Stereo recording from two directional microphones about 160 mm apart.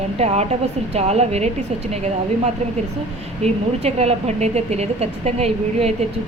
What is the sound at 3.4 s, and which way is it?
Speech, 40° right (ahead or behind).